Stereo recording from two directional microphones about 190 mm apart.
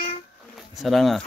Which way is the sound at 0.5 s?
Centre (ahead or behind).